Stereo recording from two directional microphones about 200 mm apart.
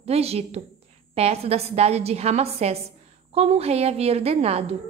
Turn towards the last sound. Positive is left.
turn(degrees=-30)  # may be behind; listen again after turning